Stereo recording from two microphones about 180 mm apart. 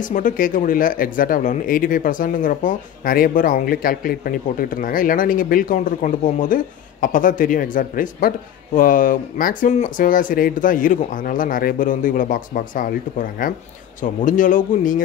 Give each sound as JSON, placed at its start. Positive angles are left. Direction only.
{"t": 0.0, "sound": "speech", "side_deg": 45}